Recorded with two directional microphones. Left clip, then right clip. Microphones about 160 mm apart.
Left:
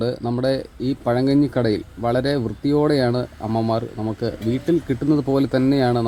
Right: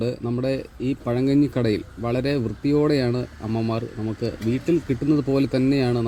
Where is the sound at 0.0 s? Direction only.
15° right (ahead or behind).